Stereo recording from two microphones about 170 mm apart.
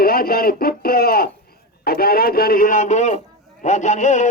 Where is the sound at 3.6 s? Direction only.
45° left (ahead or behind).